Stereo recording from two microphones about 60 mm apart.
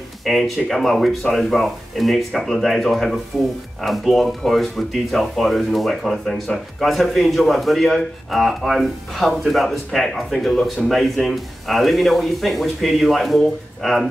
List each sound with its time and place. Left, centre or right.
0.2 s speech: centre